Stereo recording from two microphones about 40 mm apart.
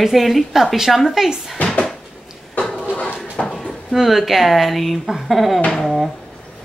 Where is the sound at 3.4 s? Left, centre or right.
Left.